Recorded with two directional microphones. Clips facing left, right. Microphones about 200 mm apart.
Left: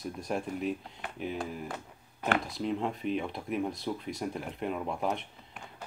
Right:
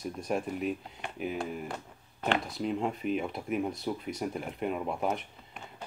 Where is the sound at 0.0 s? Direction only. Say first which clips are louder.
Right 2 dB; centre (ahead or behind).